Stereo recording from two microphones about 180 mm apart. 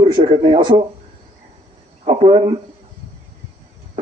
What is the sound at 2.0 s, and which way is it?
Speech, 35° right (ahead or behind).